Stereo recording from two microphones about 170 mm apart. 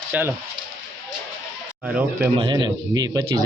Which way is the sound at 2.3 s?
25° right (ahead or behind).